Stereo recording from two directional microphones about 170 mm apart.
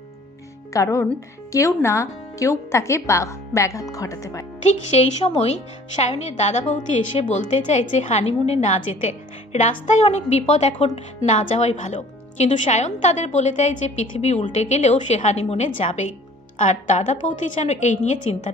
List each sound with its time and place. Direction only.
0.7 s speech: 20° left (ahead or behind)
4.6 s a woman's voice: 40° left (ahead or behind)